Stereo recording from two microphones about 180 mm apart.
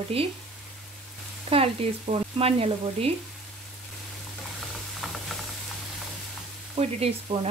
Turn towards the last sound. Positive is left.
turn(degrees=-35)  # may be behind; listen again after turning